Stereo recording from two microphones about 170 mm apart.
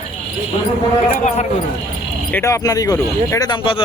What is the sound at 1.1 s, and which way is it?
Speech, 45° left (ahead or behind).